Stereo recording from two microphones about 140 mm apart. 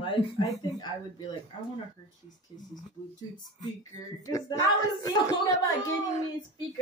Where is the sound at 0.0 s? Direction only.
35° left (ahead or behind).